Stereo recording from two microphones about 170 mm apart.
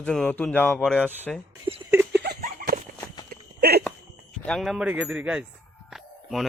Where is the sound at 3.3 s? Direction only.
65° right (ahead or behind).